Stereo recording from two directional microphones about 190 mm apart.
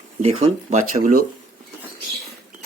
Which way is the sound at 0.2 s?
30° right (ahead or behind).